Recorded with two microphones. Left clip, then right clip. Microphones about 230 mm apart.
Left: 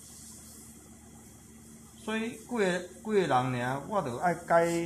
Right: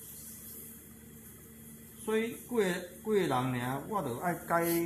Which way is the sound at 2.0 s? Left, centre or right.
Centre.